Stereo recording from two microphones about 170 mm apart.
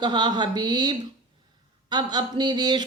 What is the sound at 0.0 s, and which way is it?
Speech, 25° right (ahead or behind).